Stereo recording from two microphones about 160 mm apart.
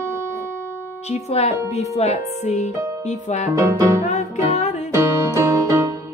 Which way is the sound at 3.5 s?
20° right (ahead or behind).